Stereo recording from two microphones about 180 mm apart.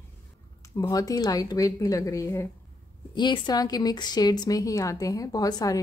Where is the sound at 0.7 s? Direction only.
20° left (ahead or behind).